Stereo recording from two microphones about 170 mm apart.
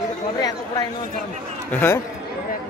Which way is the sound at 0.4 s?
20° left (ahead or behind).